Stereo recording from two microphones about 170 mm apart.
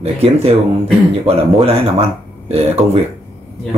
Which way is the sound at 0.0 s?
35° right (ahead or behind).